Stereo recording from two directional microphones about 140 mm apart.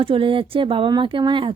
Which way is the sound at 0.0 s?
40° right (ahead or behind).